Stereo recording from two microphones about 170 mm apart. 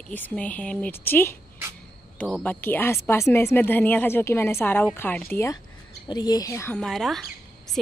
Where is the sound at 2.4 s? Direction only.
10° left (ahead or behind).